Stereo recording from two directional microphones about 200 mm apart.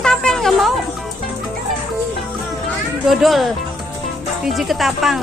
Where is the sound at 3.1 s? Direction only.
Centre (ahead or behind).